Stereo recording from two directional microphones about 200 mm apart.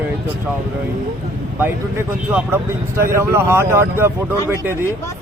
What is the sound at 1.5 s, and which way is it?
Speech, 10° right (ahead or behind).